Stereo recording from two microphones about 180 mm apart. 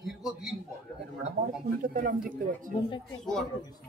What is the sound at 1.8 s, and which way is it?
Speech, 50° right (ahead or behind).